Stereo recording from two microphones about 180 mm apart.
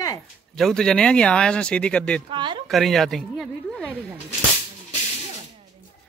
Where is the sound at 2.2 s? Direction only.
25° right (ahead or behind).